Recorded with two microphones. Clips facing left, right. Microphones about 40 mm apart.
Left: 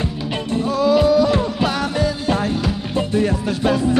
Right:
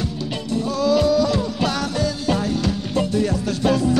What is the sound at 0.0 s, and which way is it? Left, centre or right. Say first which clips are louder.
Music: left 3 dB; left.